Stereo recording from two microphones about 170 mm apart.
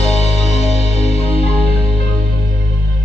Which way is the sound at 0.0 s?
40° left (ahead or behind).